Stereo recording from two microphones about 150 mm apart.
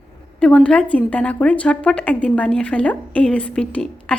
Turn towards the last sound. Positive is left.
turn(degrees=5)  # may be behind; listen again after turning